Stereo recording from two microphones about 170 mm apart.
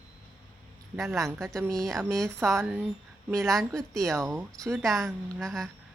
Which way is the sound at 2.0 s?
20° right (ahead or behind).